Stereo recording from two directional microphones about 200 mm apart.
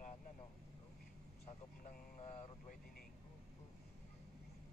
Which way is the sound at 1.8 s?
35° left (ahead or behind).